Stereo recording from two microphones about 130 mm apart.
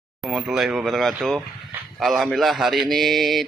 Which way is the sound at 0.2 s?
Centre (ahead or behind).